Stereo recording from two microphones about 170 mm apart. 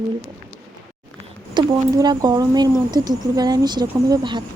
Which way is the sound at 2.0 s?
25° right (ahead or behind).